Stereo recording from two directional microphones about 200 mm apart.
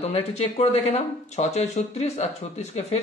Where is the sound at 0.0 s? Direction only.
30° left (ahead or behind).